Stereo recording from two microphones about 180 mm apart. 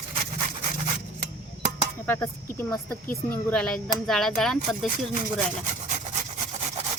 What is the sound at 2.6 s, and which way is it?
Speech, 10° left (ahead or behind).